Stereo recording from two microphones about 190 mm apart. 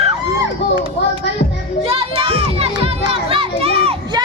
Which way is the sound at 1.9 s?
30° right (ahead or behind).